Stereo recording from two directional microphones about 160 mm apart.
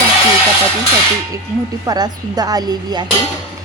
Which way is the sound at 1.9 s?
25° right (ahead or behind).